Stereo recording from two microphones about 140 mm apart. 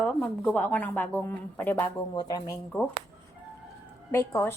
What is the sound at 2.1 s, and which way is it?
Speech, 30° left (ahead or behind).